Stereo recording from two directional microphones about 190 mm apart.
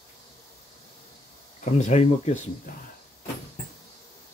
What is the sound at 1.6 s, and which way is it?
Speech, 40° left (ahead or behind).